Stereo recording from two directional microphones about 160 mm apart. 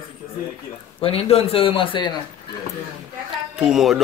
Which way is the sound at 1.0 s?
40° left (ahead or behind).